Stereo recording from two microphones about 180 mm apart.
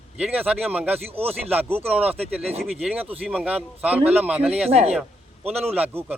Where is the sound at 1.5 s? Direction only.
10° right (ahead or behind).